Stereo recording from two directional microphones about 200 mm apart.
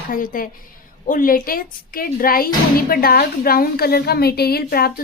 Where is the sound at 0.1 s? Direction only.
45° left (ahead or behind).